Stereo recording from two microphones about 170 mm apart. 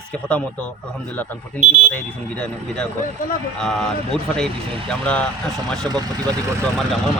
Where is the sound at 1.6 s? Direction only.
40° right (ahead or behind).